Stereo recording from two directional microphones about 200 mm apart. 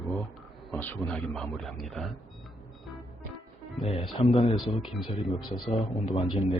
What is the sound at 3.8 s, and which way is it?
Speech, 30° left (ahead or behind).